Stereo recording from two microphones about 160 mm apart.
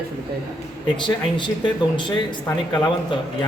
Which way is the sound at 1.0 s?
30° left (ahead or behind).